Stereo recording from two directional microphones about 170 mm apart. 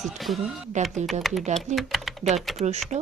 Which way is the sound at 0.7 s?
45° right (ahead or behind).